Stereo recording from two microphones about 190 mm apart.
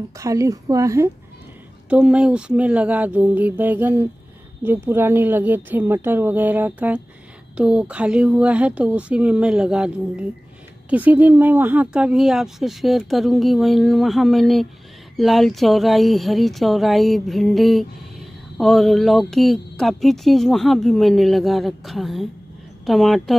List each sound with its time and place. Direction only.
0.2 s speech: 15° right (ahead or behind); by 23.3 s centre (ahead or behind)